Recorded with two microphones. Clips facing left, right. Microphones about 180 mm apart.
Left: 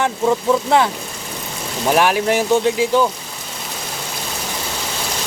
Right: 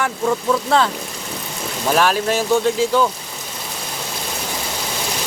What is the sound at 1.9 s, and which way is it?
Speech, 15° left (ahead or behind).